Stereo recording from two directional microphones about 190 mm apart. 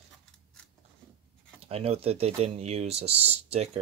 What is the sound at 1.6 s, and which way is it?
Speech, 30° right (ahead or behind).